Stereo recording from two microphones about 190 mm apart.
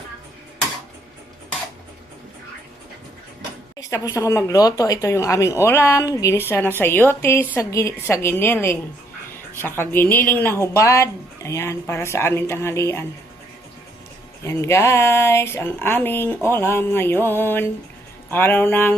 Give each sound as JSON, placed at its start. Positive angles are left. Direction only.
{"t": 3.8, "sound": "speech", "side_deg": 15}
{"t": 14.4, "sound": "speech", "side_deg": 15}